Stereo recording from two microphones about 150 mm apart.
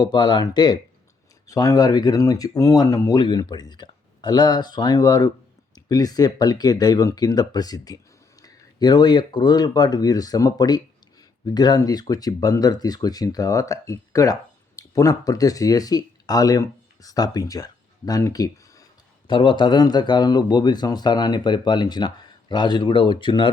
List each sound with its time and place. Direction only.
0.0 s a man's voice: 30° left (ahead or behind)